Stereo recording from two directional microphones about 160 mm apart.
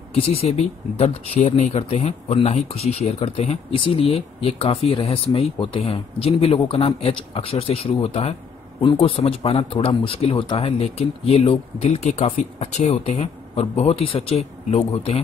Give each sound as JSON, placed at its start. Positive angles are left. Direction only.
{"t": 0.1, "sound": "speech", "side_deg": 40}